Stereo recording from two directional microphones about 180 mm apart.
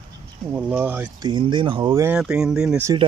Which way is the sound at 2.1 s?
5° right (ahead or behind).